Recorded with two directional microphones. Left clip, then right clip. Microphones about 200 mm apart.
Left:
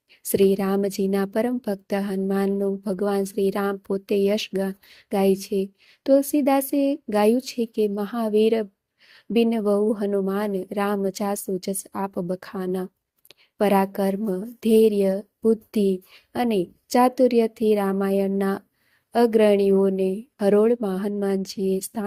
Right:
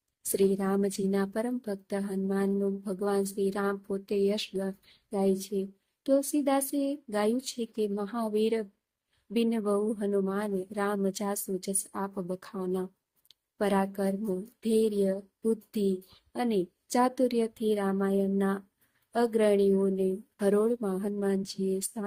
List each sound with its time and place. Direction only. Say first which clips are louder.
0.2 s a woman's voice: left 8 dB; 30° left (ahead or behind)
16.3 s a woman's voice: left 6 dB; 30° left (ahead or behind)